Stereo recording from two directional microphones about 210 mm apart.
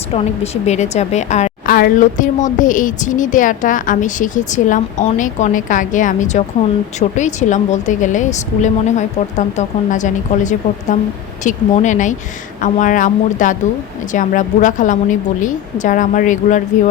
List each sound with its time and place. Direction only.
0.1 s a woman's voice: 30° left (ahead or behind)